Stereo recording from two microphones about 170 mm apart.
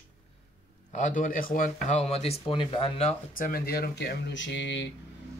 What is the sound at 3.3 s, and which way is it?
Speech, 60° left (ahead or behind).